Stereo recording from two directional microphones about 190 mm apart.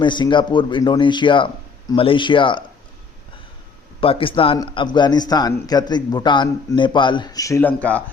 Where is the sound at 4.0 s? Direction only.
30° left (ahead or behind); by 8.0 s 10° left (ahead or behind).